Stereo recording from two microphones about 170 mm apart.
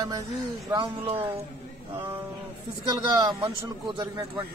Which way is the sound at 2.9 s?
25° right (ahead or behind).